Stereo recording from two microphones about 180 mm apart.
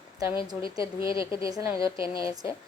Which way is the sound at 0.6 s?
30° left (ahead or behind).